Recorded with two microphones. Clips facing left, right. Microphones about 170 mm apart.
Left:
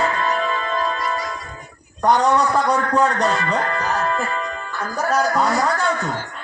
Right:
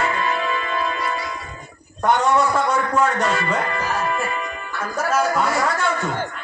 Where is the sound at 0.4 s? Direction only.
10° right (ahead or behind).